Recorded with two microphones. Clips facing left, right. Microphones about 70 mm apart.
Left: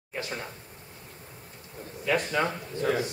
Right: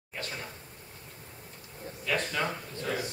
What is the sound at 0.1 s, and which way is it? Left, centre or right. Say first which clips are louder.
Speech: left 4 dB; centre.